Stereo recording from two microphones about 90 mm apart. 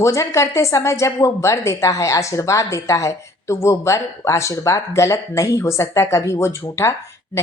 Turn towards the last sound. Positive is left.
turn(degrees=30)  # may be behind; listen again after turning